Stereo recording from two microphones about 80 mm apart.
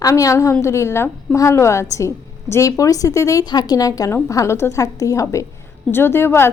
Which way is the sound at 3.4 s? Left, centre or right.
Left.